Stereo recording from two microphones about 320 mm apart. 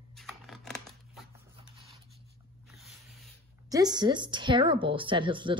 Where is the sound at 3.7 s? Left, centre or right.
Centre.